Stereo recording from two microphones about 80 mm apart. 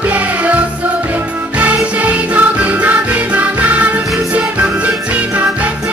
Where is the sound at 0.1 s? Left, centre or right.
Centre.